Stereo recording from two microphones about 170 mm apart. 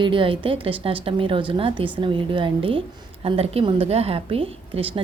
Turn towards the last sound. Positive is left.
turn(degrees=-35)  # may be behind; listen again after turning